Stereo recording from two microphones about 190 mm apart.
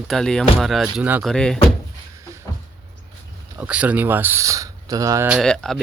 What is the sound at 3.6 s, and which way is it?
Speech, 5° right (ahead or behind).